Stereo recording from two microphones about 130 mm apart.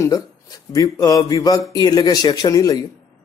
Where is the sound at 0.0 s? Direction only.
25° left (ahead or behind).